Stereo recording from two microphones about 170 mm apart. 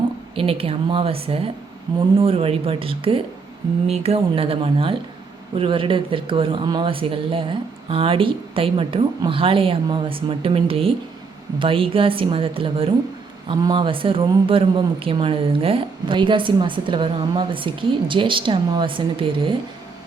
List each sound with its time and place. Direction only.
0.3 s speech: 35° right (ahead or behind)